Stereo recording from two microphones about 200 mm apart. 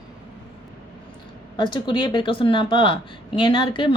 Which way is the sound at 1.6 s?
25° left (ahead or behind).